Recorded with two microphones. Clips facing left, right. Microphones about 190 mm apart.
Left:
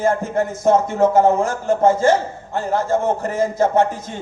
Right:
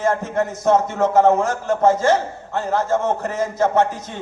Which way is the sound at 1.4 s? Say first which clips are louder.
Left 1 dB; 50° left (ahead or behind).